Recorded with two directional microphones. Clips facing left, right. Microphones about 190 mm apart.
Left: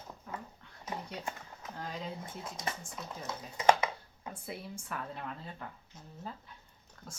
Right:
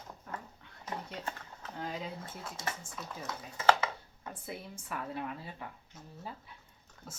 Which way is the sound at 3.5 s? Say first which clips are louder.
Left 1 dB; 15° left (ahead or behind).